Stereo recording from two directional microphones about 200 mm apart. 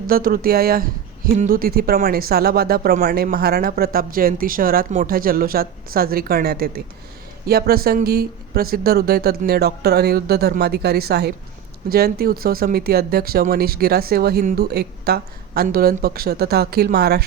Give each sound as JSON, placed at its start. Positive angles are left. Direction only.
{"t": 0.1, "sound": "speech", "side_deg": -45}